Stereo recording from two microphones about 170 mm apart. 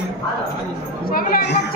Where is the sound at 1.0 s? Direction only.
60° left (ahead or behind).